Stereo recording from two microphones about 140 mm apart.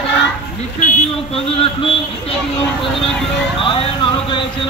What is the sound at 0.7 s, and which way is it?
Speech, 60° left (ahead or behind).